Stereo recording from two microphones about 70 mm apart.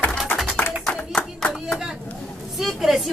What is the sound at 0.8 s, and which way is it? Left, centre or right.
Clapping, centre.